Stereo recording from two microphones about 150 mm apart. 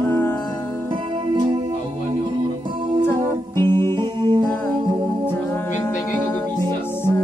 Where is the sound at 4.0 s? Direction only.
30° right (ahead or behind).